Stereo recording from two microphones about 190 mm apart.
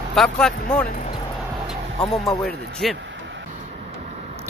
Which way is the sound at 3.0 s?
70° right (ahead or behind).